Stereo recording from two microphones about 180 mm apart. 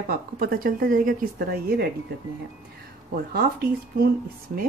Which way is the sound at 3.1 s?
55° right (ahead or behind).